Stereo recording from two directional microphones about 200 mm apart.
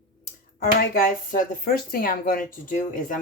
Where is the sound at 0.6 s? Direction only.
45° left (ahead or behind).